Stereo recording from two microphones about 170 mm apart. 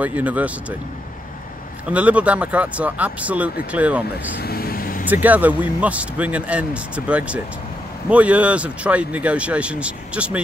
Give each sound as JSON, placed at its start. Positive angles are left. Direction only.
{"t": 0.0, "sound": "speech", "side_deg": -10}
{"t": 1.9, "sound": "speech", "side_deg": -10}
{"t": 4.4, "sound": "vehicle", "side_deg": 65}
{"t": 5.0, "sound": "speech", "side_deg": -10}